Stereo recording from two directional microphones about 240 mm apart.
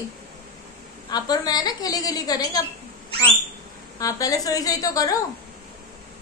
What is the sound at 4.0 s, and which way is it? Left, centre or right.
A woman's voice, centre.